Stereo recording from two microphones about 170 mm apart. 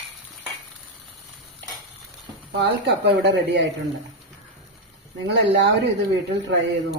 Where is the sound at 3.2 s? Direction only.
90° right.